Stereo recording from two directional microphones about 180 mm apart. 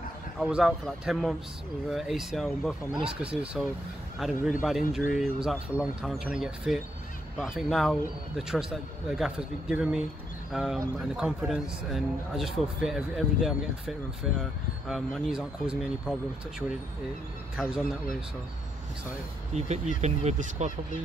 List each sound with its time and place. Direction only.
0.4 s speech: 5° right (ahead or behind)
19.5 s speech: 40° right (ahead or behind)